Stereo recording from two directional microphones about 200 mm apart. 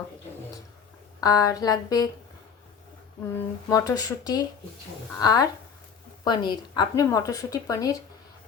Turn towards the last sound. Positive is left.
turn(degrees=15)  # may be behind; listen again after turning